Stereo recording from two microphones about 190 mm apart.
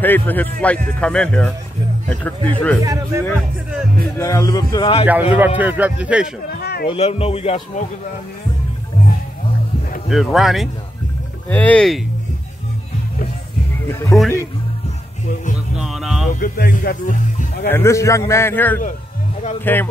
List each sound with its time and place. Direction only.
0.0 s speech: 10° left (ahead or behind)
2.8 s speech: 15° right (ahead or behind)
4.2 s a man's voice: 15° left (ahead or behind)
5.0 s speech: 10° right (ahead or behind)
6.6 s a sound: 55° left (ahead or behind)
6.9 s a man's voice: 30° left (ahead or behind)
10.0 s speech: centre (ahead or behind)
13.8 s speech: 15° left (ahead or behind)
15.7 s music: centre (ahead or behind)
16.3 s speech: 45° left (ahead or behind)
17.6 s speech: 15° left (ahead or behind)